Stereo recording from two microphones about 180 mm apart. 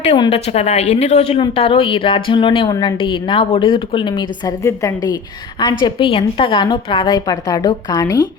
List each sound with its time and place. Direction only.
0.3 s a woman's voice: 35° left (ahead or behind); by 5.1 s 15° left (ahead or behind)
5.8 s a woman's voice: 30° left (ahead or behind)